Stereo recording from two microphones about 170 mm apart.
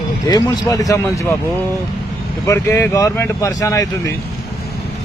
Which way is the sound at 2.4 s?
15° left (ahead or behind).